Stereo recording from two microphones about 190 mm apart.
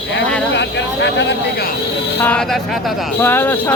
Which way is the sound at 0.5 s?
65° left (ahead or behind).